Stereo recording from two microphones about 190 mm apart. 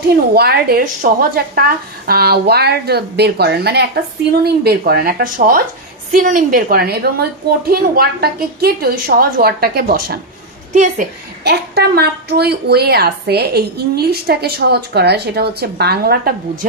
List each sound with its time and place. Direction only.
0.3 s a woman's voice: 55° right (ahead or behind)
10.7 s a woman's voice: 40° right (ahead or behind)
11.4 s a woman's voice: 60° right (ahead or behind)